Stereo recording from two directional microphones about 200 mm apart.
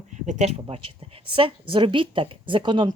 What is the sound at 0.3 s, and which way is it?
A woman's voice, 35° right (ahead or behind).